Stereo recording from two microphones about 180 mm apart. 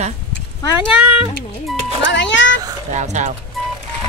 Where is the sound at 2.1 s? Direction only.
85° left.